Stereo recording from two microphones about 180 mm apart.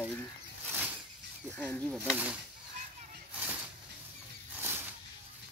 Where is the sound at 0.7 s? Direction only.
10° right (ahead or behind).